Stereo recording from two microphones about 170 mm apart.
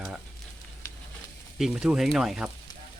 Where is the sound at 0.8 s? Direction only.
15° left (ahead or behind).